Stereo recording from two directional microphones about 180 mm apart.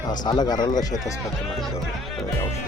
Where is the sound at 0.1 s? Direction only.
25° left (ahead or behind).